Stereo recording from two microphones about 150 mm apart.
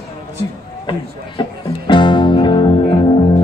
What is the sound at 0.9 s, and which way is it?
Music, 30° left (ahead or behind).